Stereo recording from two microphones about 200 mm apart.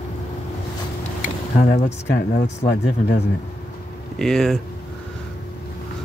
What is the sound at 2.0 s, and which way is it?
Speech, 45° left (ahead or behind).